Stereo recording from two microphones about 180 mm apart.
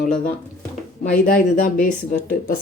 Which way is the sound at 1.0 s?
50° left (ahead or behind).